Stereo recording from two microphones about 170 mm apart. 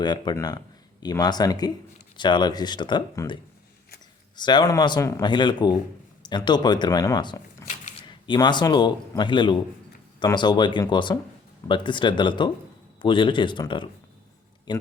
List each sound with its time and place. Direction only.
0.0 s speech: 25° left (ahead or behind)
4.4 s a man's voice: 25° left (ahead or behind)